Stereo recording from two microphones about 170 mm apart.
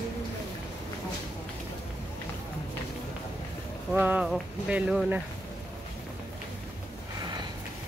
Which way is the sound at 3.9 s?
10° right (ahead or behind).